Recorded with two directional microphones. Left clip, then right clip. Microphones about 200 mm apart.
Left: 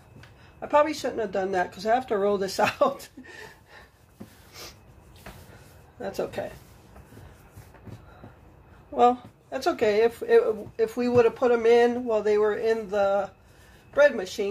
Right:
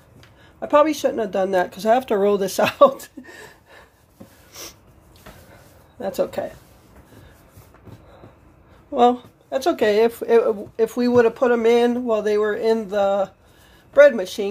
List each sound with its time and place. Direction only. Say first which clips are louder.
0.8 s speech: right 7 dB; 40° right (ahead or behind)
4.5 s a sound: right 6 dB; 45° right (ahead or behind)
5.9 s speech: right 7 dB; 40° right (ahead or behind)
8.9 s speech: right 4 dB; 45° right (ahead or behind)